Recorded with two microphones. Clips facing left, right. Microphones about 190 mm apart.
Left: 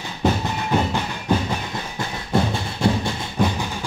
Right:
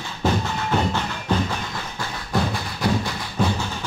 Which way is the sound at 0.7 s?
15° left (ahead or behind).